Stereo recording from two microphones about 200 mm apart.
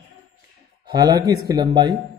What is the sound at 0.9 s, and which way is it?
Speech, 20° right (ahead or behind).